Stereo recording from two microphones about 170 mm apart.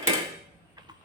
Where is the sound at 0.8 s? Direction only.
25° right (ahead or behind).